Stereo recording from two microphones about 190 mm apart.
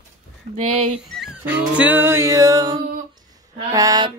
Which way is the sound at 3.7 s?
20° right (ahead or behind).